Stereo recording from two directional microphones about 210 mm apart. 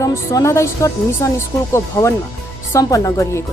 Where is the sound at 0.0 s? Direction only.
15° left (ahead or behind).